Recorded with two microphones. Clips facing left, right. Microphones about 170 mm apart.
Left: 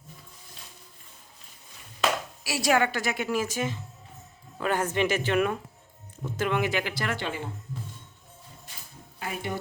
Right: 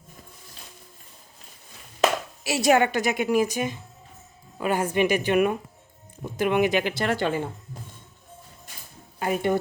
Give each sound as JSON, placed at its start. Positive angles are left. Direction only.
{"t": 2.4, "sound": "a woman's voice", "side_deg": -20}
{"t": 7.2, "sound": "speech", "side_deg": -45}
{"t": 9.1, "sound": "speech", "side_deg": -55}